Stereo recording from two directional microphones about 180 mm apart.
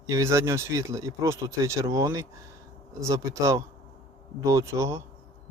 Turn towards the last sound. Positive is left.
turn(degrees=-15)  # may be behind; listen again after turning